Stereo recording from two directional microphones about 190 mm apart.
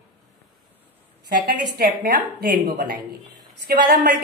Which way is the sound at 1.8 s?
55° right (ahead or behind).